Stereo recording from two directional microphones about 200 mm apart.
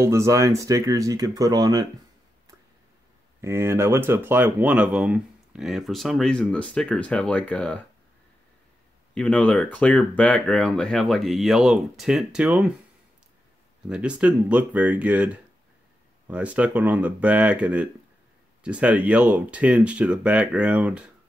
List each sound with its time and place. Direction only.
0.0 s speech: 15° right (ahead or behind)
3.3 s speech: 15° right (ahead or behind); by 7.8 s 5° left (ahead or behind)
9.1 s speech: 5° left (ahead or behind)
13.8 s speech: 5° right (ahead or behind)